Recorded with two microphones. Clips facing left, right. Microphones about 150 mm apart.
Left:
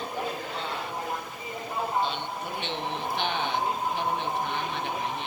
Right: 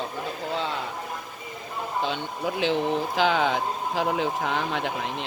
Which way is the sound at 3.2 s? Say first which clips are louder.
Right 6 dB; 90° right.